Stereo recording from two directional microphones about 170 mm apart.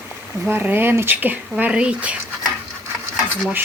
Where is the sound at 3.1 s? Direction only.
5° right (ahead or behind).